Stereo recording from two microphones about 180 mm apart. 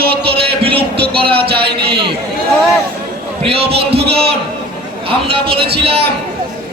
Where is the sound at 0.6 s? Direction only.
30° right (ahead or behind).